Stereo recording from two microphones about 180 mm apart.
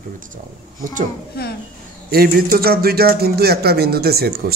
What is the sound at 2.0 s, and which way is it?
Speech, 55° right (ahead or behind).